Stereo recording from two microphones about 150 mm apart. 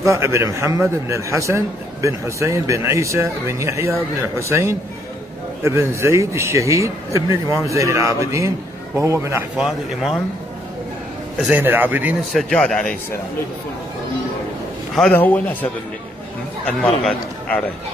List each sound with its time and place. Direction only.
0.0 s a man's voice: 20° right (ahead or behind)
9.6 s speech: centre (ahead or behind)
11.3 s speech: 5° right (ahead or behind)
12.3 s speech: 5° left (ahead or behind)
15.0 s a man's voice: 10° left (ahead or behind)
16.6 s speech: 10° left (ahead or behind)